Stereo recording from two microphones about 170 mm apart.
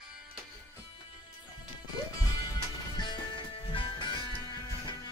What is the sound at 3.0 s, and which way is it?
Music, 30° left (ahead or behind).